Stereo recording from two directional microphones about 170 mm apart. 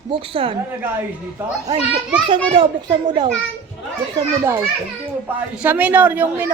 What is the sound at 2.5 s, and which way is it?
Speech, 30° right (ahead or behind).